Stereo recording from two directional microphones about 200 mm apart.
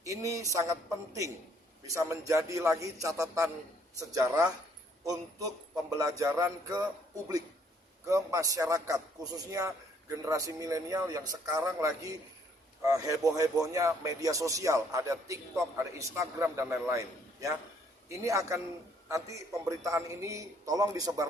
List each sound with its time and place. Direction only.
0.0 s speech: 15° right (ahead or behind)
5.9 s speech: 15° right (ahead or behind)
8.0 s speech: 15° right (ahead or behind)